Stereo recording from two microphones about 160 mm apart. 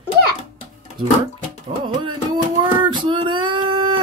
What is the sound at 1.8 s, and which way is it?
Child singing, 30° right (ahead or behind).